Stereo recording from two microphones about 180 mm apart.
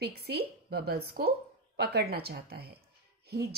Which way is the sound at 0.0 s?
60° right (ahead or behind).